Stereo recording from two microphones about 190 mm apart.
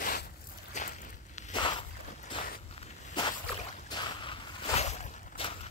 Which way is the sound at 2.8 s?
25° left (ahead or behind).